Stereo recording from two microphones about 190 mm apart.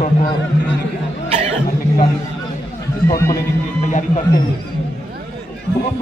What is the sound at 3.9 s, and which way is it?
Speech, 40° left (ahead or behind).